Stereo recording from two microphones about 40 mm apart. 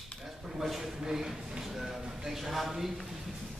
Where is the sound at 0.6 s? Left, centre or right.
Centre.